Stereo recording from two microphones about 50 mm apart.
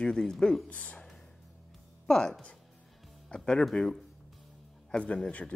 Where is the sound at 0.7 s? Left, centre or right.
Left.